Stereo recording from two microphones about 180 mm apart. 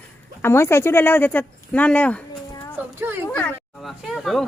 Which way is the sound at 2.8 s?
10° right (ahead or behind).